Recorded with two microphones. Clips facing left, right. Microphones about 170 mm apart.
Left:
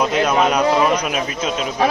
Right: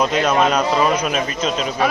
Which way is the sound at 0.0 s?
10° left (ahead or behind).